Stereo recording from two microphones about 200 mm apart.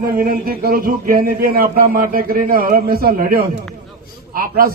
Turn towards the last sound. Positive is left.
turn(degrees=-45)  # may be behind; listen again after turning